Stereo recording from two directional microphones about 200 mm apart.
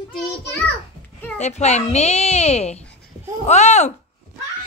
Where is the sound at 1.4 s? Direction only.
35° left (ahead or behind).